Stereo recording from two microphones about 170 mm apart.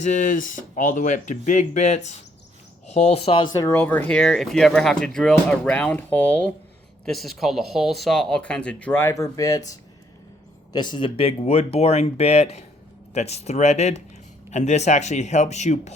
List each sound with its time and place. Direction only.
0.0 s speech: 45° left (ahead or behind); by 9.6 s 20° left (ahead or behind)
10.7 s speech: 25° left (ahead or behind); by 15.9 s 40° left (ahead or behind)